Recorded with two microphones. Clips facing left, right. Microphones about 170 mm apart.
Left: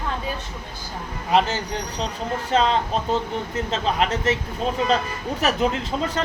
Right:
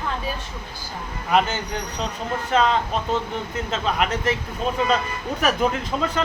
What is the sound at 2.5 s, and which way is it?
Speech, 30° left (ahead or behind).